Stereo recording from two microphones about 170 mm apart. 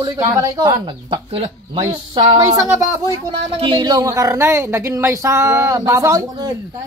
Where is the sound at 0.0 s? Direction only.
20° right (ahead or behind).